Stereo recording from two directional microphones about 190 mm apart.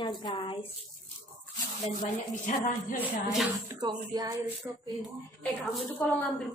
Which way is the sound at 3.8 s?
20° right (ahead or behind).